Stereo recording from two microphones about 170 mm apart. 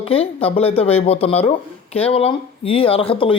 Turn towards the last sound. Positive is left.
turn(degrees=30)  # may be behind; listen again after turning